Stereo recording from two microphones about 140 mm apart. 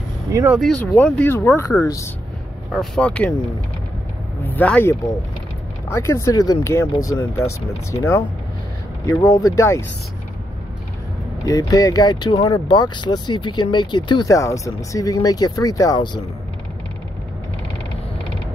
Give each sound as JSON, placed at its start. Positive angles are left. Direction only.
{"t": 0.5, "sound": "speech", "side_deg": 5}
{"t": 2.7, "sound": "speech", "side_deg": 5}
{"t": 4.5, "sound": "speech", "side_deg": 10}
{"t": 9.2, "sound": "speech", "side_deg": 25}
{"t": 11.4, "sound": "speech", "side_deg": 25}